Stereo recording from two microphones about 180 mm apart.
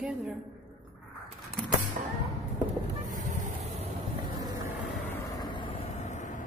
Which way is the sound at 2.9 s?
40° right (ahead or behind).